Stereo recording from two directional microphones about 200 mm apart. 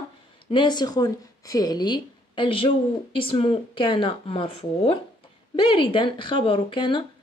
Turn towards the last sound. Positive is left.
turn(degrees=25)  # may be behind; listen again after turning